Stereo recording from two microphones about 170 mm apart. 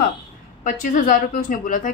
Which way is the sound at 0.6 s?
50° left (ahead or behind).